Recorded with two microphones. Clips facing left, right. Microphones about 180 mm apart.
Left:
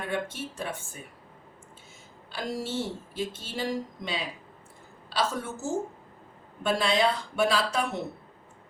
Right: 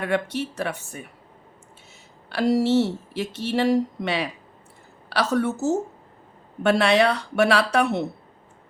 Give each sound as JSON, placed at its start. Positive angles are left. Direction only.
{"t": 0.0, "sound": "speech", "side_deg": -70}
{"t": 2.3, "sound": "speech", "side_deg": -70}